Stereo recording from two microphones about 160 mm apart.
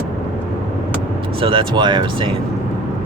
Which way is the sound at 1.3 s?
35° right (ahead or behind).